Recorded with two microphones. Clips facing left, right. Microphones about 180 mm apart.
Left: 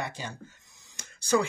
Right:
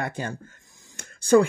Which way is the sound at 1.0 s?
55° right (ahead or behind).